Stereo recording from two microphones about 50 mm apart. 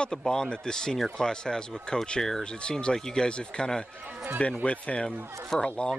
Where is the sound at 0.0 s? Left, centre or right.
Centre.